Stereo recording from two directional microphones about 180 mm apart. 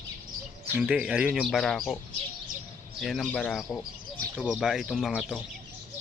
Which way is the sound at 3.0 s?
Centre (ahead or behind).